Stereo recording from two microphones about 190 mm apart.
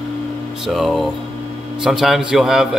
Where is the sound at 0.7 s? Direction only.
Centre (ahead or behind).